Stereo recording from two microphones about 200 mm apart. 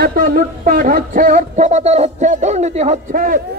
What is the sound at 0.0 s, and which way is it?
Speech, 50° right (ahead or behind).